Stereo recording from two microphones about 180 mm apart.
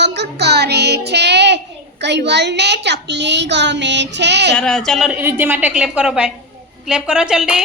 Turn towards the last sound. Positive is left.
turn(degrees=-5)  # may be behind; listen again after turning